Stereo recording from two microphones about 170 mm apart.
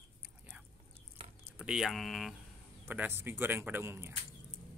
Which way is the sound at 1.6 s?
5° right (ahead or behind).